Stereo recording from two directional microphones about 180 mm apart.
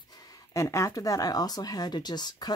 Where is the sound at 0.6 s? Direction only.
15° left (ahead or behind).